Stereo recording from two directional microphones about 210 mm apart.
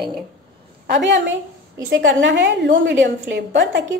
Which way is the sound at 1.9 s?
60° right (ahead or behind).